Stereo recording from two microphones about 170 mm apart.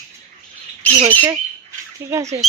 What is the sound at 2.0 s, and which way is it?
Speech, 15° right (ahead or behind).